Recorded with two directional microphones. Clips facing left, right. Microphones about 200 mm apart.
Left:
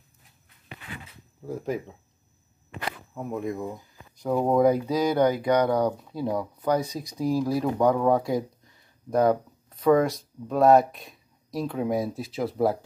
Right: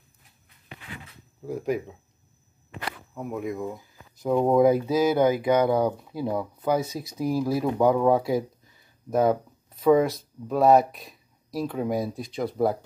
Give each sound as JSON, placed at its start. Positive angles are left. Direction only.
{"t": 1.4, "sound": "speech", "side_deg": -10}
{"t": 3.2, "sound": "speech", "side_deg": 0}